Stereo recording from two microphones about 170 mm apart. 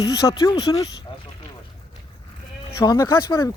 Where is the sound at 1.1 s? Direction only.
30° left (ahead or behind).